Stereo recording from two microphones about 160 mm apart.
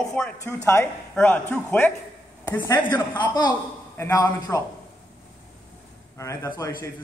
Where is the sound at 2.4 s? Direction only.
25° left (ahead or behind).